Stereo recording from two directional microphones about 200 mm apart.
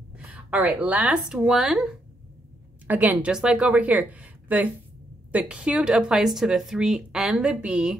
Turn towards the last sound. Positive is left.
turn(degrees=-5)  # may be behind; listen again after turning